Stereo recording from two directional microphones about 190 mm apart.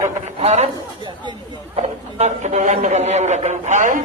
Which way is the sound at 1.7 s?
35° right (ahead or behind).